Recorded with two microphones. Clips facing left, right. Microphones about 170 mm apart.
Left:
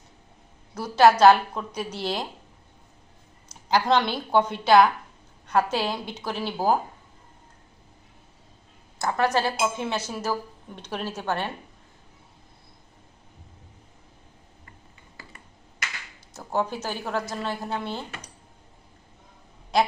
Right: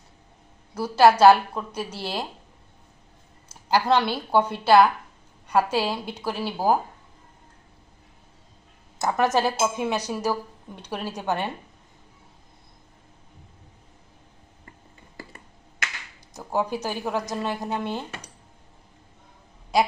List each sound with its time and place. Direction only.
0.7 s a woman's voice: 10° right (ahead or behind)
3.5 s a woman's voice: 10° right (ahead or behind)
9.0 s a woman's voice: 20° right (ahead or behind)
16.3 s a woman's voice: 10° right (ahead or behind)
19.7 s a woman's voice: 10° right (ahead or behind)